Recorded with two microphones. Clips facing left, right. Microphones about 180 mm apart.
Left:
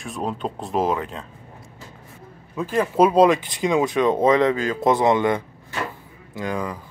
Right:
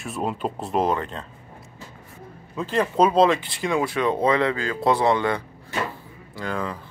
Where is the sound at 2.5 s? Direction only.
10° left (ahead or behind).